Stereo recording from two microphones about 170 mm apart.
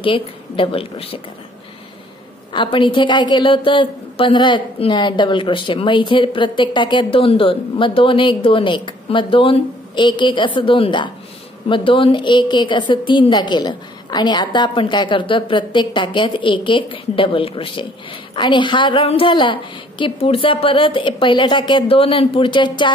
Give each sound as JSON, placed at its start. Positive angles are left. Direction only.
{"t": 0.0, "sound": "a woman's voice", "side_deg": 30}
{"t": 2.5, "sound": "a woman's voice", "side_deg": 30}